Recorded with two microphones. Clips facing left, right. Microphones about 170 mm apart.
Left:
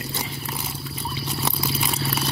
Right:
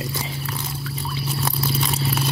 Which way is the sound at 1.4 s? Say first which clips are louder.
Right 2 dB; centre (ahead or behind).